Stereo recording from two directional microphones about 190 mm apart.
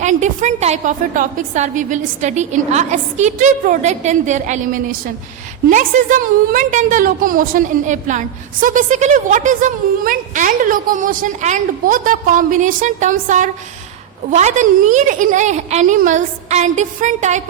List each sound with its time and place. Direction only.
0.0 s a woman's voice: 40° right (ahead or behind)